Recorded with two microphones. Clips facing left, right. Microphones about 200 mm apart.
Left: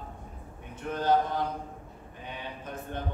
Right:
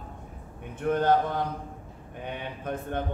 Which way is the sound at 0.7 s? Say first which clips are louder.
Right 5 dB; 55° right (ahead or behind).